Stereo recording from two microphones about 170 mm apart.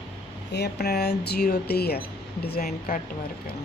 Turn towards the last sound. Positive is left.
turn(degrees=60)  # may be behind; listen again after turning